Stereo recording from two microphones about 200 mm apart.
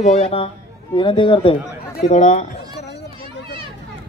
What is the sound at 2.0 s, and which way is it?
Speech, 40° left (ahead or behind).